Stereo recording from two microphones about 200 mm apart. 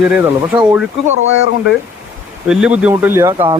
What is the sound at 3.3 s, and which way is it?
Speech, 25° right (ahead or behind).